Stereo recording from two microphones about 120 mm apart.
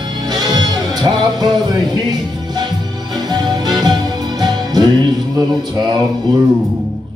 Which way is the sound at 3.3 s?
35° right (ahead or behind).